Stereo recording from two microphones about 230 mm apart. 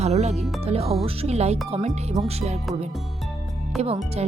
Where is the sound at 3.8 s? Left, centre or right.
Right.